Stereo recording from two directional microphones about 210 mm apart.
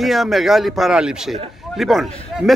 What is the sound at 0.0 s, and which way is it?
Speech, centre (ahead or behind).